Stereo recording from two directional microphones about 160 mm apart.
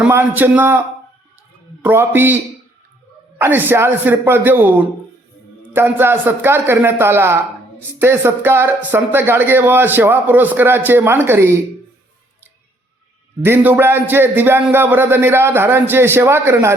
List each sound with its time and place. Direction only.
0.0 s speech: 10° right (ahead or behind)
1.8 s speech: 15° right (ahead or behind)
13.4 s speech: 15° right (ahead or behind)